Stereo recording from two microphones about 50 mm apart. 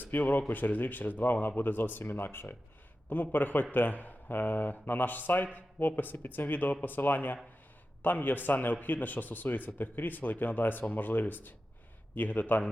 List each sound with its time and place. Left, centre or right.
0.0 s a man's voice: left